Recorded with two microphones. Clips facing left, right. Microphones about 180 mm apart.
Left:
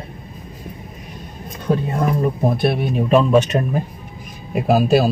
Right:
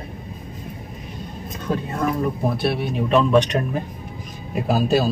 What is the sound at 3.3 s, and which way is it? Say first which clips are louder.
Speech: left 2 dB; 5° left (ahead or behind).